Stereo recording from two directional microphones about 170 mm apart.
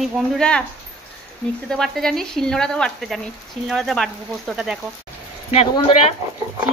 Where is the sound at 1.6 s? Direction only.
5° left (ahead or behind).